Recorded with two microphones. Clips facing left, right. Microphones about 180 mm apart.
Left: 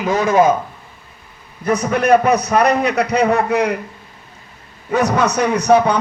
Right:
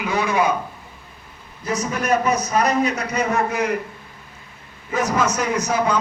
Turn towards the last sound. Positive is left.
turn(degrees=65)  # may be behind; listen again after turning